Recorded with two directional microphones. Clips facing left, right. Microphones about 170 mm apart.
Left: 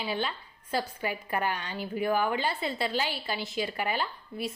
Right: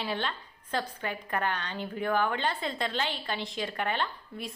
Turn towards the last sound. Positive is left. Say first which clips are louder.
# left 1 dB
turn(degrees=5)  # may be behind; listen again after turning